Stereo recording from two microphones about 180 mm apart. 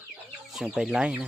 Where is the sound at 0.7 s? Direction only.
5° right (ahead or behind).